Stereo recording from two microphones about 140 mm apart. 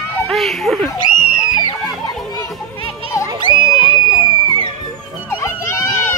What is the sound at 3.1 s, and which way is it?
Music, 20° left (ahead or behind).